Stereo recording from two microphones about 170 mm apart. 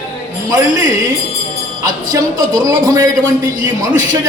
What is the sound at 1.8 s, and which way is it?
Speech, 20° right (ahead or behind).